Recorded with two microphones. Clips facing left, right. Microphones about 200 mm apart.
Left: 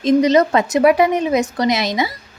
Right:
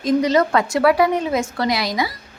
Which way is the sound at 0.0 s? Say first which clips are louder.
Left 4 dB; 20° left (ahead or behind).